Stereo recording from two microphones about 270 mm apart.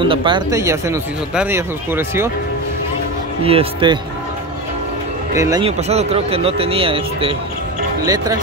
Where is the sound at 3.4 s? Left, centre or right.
Centre.